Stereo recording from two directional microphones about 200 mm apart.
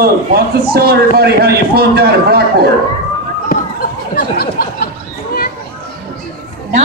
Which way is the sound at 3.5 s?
45° left (ahead or behind).